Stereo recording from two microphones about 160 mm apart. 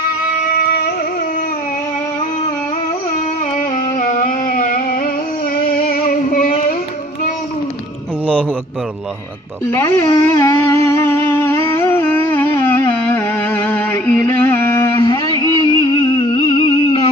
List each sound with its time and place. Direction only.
0.6 s music: 70° left (ahead or behind)
4.0 s a sound: 60° left (ahead or behind)
5.7 s music: 60° left (ahead or behind)
9.7 s music: 15° left (ahead or behind)